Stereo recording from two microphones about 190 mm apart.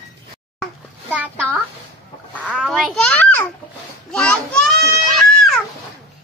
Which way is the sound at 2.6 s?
Centre (ahead or behind).